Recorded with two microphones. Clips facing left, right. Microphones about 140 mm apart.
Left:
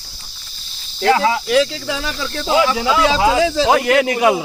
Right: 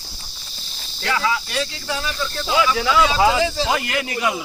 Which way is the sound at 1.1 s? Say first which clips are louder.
Left 6 dB; 40° left (ahead or behind).